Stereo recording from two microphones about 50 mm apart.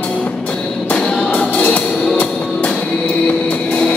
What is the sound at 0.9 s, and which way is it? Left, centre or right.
Music, left.